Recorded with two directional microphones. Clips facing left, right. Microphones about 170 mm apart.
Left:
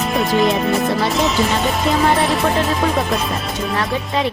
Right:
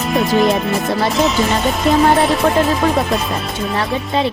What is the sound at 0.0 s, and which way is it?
Speech, centre (ahead or behind).